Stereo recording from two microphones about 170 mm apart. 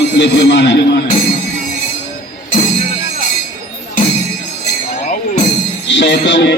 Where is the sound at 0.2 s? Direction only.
90° left.